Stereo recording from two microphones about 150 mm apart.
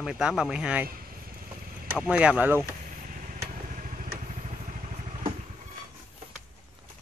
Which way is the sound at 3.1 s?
65° right (ahead or behind).